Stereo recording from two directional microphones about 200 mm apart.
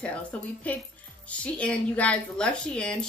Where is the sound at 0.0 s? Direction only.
5° left (ahead or behind).